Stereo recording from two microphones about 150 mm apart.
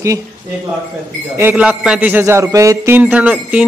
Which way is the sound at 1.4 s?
10° right (ahead or behind).